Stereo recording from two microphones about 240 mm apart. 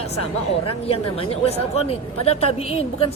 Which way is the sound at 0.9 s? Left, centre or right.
Left.